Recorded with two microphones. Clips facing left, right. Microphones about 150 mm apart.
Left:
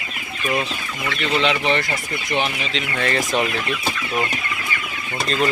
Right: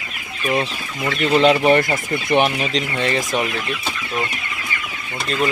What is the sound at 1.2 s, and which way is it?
Speech, 40° right (ahead or behind).